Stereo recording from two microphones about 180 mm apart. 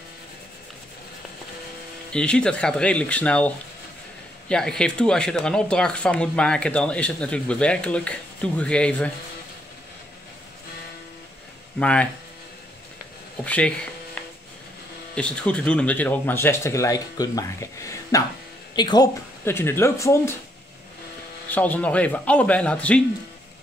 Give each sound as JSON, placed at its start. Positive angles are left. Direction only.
{"t": 2.1, "sound": "speech", "side_deg": 5}
{"t": 11.8, "sound": "speech", "side_deg": 5}
{"t": 13.4, "sound": "speech", "side_deg": 5}
{"t": 19.4, "sound": "speech", "side_deg": 15}
{"t": 21.5, "sound": "speech", "side_deg": 10}